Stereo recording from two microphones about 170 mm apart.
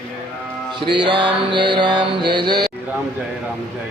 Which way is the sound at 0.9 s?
30° right (ahead or behind).